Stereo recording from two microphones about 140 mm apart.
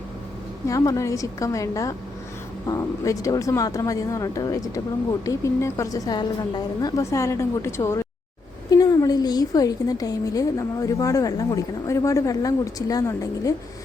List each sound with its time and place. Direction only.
0.7 s a woman's voice: 25° left (ahead or behind)